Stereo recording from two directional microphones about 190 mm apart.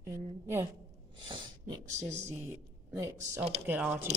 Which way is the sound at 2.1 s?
15° right (ahead or behind).